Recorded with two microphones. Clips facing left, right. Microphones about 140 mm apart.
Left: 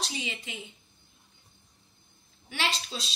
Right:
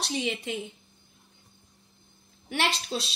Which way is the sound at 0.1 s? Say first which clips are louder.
Right 8 dB; 50° right (ahead or behind).